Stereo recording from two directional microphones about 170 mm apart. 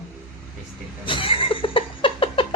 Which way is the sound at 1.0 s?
30° left (ahead or behind).